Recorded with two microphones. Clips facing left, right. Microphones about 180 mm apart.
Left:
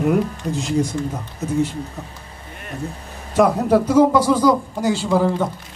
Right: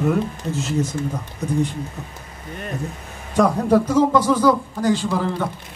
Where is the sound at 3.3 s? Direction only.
10° left (ahead or behind).